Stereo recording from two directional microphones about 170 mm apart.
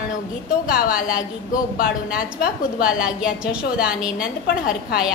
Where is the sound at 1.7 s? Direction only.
60° left (ahead or behind).